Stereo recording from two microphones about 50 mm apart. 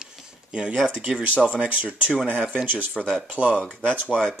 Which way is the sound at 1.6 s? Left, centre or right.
Right.